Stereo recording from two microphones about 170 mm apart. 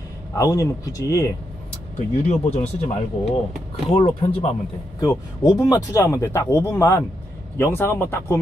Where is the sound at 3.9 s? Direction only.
35° left (ahead or behind).